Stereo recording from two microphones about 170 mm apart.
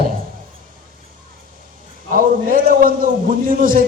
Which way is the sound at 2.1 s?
55° right (ahead or behind).